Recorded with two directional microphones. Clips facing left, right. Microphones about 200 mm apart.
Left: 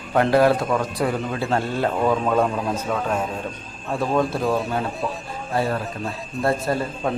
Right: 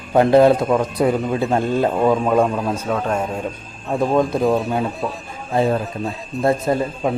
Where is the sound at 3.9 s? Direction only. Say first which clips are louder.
Right 4 dB; 20° right (ahead or behind).